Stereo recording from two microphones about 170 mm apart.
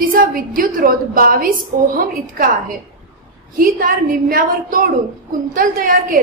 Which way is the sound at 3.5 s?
55° right (ahead or behind).